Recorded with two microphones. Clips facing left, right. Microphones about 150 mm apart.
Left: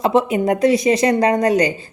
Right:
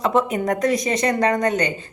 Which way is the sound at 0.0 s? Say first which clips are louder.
Left 4 dB; 30° left (ahead or behind).